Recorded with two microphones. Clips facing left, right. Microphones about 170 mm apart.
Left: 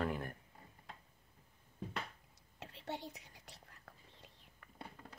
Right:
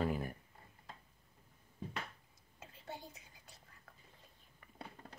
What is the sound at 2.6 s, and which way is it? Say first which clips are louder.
Whispering: left 5 dB; 70° left (ahead or behind).